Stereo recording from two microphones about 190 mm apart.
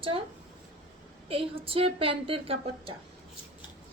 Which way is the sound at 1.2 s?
30° right (ahead or behind).